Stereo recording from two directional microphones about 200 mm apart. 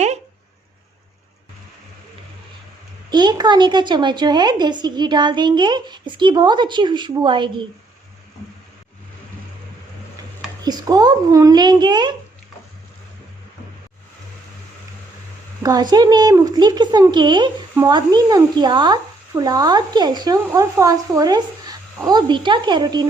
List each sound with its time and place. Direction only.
3.1 s a woman's voice: 20° right (ahead or behind)
10.6 s a woman's voice: 20° right (ahead or behind)
15.6 s a woman's voice: 20° right (ahead or behind)